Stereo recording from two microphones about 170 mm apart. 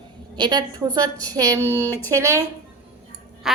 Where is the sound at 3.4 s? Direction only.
Centre (ahead or behind).